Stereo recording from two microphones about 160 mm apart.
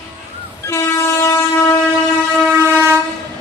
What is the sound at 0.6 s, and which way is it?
Train, 15° left (ahead or behind).